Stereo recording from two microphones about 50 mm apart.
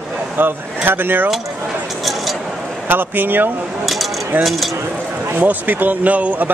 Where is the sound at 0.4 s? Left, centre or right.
Right.